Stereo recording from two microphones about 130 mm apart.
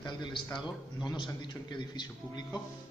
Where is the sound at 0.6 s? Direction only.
35° left (ahead or behind).